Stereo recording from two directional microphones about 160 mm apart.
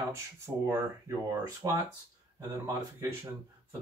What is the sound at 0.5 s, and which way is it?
Speech, 15° right (ahead or behind).